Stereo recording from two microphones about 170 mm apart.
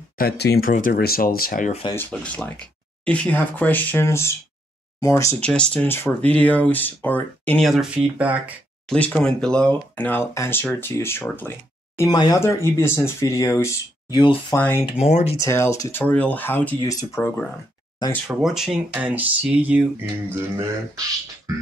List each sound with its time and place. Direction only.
0.2 s speech: 65° left (ahead or behind)
2.0 s speech: 10° left (ahead or behind); by 8.4 s 5° right (ahead or behind)
8.8 s speech: 5° left (ahead or behind)
12.0 s speech: 20° left (ahead or behind)
14.6 s speech: 15° left (ahead or behind)
14.9 s speech: 40° left (ahead or behind)
15.3 s speech: 15° left (ahead or behind)
18.2 s speech: 5° right (ahead or behind)
21.5 s music: 20° right (ahead or behind)